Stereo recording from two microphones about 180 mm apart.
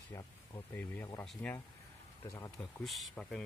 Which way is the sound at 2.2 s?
20° left (ahead or behind).